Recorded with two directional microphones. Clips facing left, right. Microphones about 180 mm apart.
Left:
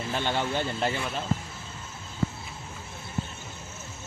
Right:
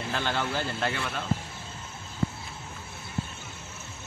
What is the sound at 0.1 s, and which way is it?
Speech, 25° left (ahead or behind).